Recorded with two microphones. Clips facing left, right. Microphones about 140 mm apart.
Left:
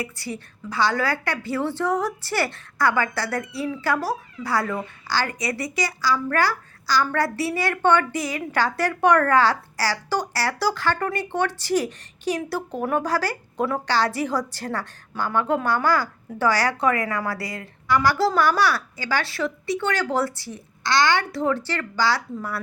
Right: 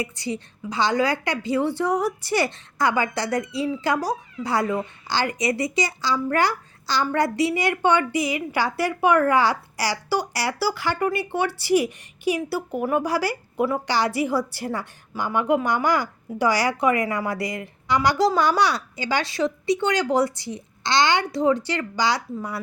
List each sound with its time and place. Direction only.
0.0 s a woman's voice: 20° right (ahead or behind)